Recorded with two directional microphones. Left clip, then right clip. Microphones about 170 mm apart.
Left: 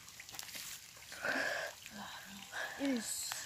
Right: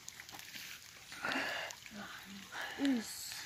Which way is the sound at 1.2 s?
10° left (ahead or behind).